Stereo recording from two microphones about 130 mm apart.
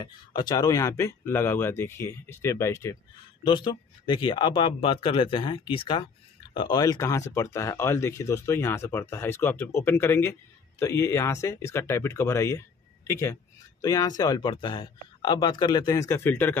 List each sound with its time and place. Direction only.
0.0 s speech: 35° left (ahead or behind)
3.4 s speech: 40° left (ahead or behind); by 16.5 s 15° left (ahead or behind)